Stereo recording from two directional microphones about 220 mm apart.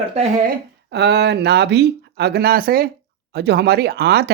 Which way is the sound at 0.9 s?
50° right (ahead or behind).